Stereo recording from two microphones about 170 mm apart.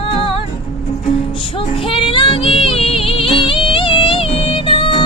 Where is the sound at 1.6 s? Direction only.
30° left (ahead or behind).